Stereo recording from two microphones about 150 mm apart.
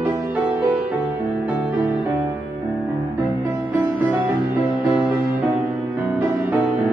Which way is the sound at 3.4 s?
15° right (ahead or behind).